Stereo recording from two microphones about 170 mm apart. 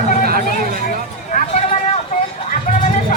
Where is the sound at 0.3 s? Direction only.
60° right (ahead or behind).